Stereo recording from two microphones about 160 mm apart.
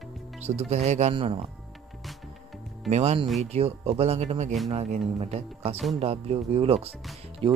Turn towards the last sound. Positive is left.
turn(degrees=-35)  # may be behind; listen again after turning